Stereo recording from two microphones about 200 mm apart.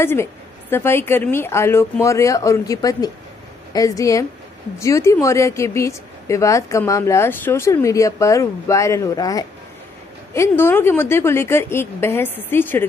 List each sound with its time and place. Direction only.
0.0 s a woman's voice: 10° left (ahead or behind)